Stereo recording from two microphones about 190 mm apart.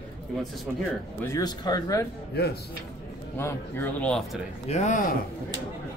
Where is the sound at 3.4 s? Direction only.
10° left (ahead or behind).